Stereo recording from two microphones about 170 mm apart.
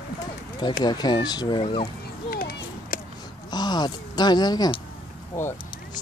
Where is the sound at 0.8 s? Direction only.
25° left (ahead or behind).